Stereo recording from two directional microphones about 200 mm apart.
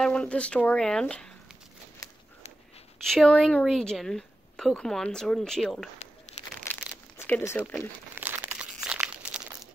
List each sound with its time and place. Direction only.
0.0 s a woman's voice: 5° left (ahead or behind)
3.1 s a woman's voice: centre (ahead or behind)
6.4 s a sound: 35° left (ahead or behind)
7.2 s speech: 10° left (ahead or behind)
8.1 s crumpling: 10° right (ahead or behind)